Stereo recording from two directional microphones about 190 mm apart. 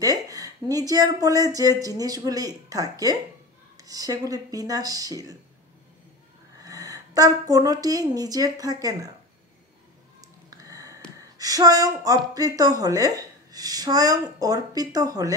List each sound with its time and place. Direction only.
0.0 s speech: 20° right (ahead or behind)
6.6 s a woman's voice: 20° right (ahead or behind)
10.5 s a sound: 20° right (ahead or behind)
11.1 s speech: 20° right (ahead or behind)